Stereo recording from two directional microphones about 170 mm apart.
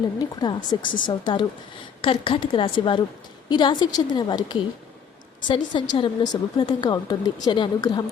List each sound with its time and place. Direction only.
0.2 s a woman's voice: 25° left (ahead or behind)